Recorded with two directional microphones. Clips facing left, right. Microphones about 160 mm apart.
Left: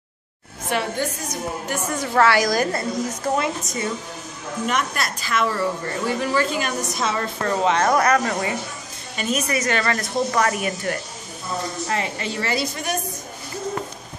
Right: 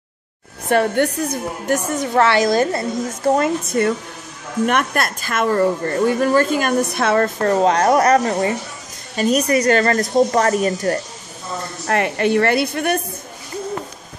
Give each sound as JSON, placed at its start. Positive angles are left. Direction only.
{"t": 0.7, "sound": "a woman's voice", "side_deg": -55}
{"t": 2.0, "sound": "a woman's voice", "side_deg": -20}
{"t": 3.3, "sound": "a woman's voice", "side_deg": -60}
{"t": 7.3, "sound": "a woman's voice", "side_deg": -40}
{"t": 11.9, "sound": "a woman's voice", "side_deg": -60}